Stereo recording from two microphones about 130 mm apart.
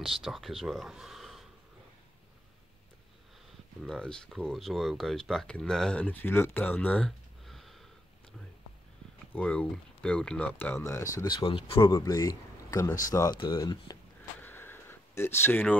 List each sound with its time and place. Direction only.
0.0 s speech: centre (ahead or behind)
3.8 s speech: 5° left (ahead or behind)
9.3 s speech: 10° left (ahead or behind)
11.2 s speech: 40° left (ahead or behind)
12.0 s speech: 25° left (ahead or behind)
14.4 s a sound: 15° left (ahead or behind)